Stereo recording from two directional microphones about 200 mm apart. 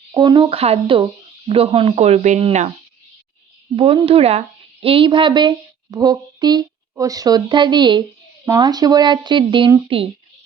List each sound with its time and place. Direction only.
0.1 s speech: 20° right (ahead or behind)
3.8 s speech: 25° right (ahead or behind)